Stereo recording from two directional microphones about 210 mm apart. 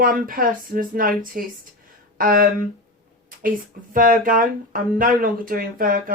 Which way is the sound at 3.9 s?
40° right (ahead or behind).